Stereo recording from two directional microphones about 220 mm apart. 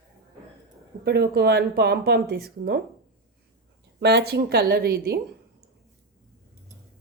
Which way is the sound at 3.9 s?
50° right (ahead or behind).